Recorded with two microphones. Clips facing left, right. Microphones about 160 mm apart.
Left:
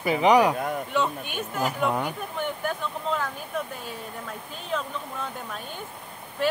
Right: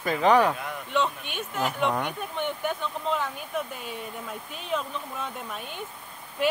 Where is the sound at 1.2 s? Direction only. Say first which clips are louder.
Left 3 dB; 45° left (ahead or behind).